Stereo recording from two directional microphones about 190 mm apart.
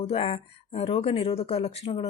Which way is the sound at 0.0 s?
30° left (ahead or behind).